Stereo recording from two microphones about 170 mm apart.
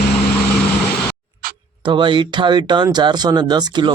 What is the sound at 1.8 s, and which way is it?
Speech, 30° right (ahead or behind).